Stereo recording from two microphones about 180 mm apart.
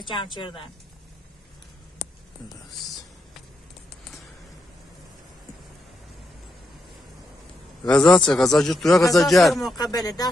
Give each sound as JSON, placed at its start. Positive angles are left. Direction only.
{"t": 0.0, "sound": "a woman's voice", "side_deg": 25}
{"t": 7.8, "sound": "a man's voice", "side_deg": 5}
{"t": 9.8, "sound": "a woman's voice", "side_deg": 20}